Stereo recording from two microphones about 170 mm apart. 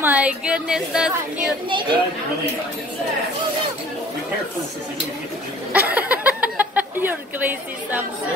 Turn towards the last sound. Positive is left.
turn(degrees=-10)  # may be behind; listen again after turning